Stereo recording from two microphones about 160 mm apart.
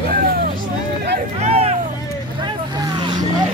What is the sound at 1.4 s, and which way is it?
Hubbub, 40° right (ahead or behind).